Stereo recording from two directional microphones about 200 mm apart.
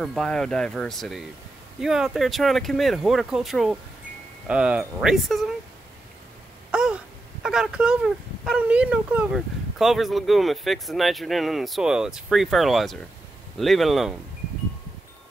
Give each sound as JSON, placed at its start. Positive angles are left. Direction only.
{"t": 0.0, "sound": "speech", "side_deg": 0}
{"t": 6.7, "sound": "a sound", "side_deg": -5}
{"t": 7.4, "sound": "speech", "side_deg": -5}